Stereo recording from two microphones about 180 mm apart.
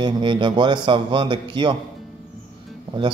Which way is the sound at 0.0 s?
25° right (ahead or behind).